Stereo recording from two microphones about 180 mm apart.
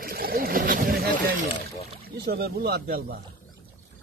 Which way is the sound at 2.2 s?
60° right (ahead or behind).